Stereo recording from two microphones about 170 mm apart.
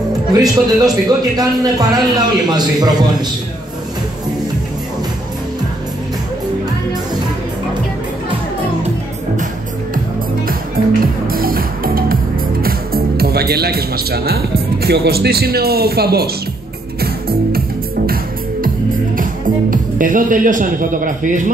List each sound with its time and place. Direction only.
0.3 s a man's voice: 20° right (ahead or behind)
11.2 s music: 60° right (ahead or behind)
19.1 s speech: 55° right (ahead or behind)